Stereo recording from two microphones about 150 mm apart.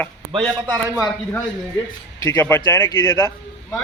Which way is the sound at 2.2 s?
15° left (ahead or behind).